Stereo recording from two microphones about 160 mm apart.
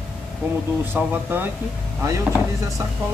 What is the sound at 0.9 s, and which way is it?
Speech, 10° right (ahead or behind).